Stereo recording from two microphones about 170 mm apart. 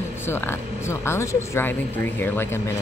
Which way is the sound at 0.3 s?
15° left (ahead or behind).